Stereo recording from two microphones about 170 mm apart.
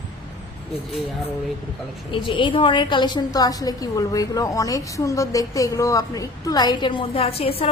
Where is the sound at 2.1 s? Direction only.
30° left (ahead or behind).